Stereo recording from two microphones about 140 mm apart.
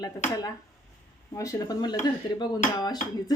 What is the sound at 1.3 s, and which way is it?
A woman's voice, 25° left (ahead or behind).